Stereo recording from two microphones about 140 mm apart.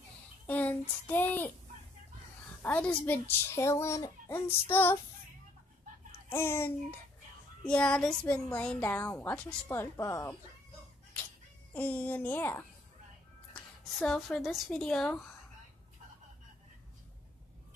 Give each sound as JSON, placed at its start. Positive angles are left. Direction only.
{"t": 0.5, "sound": "speech", "side_deg": 10}
{"t": 2.6, "sound": "a woman's voice", "side_deg": 10}
{"t": 6.3, "sound": "a woman's voice", "side_deg": 15}
{"t": 11.7, "sound": "a woman's voice", "side_deg": 10}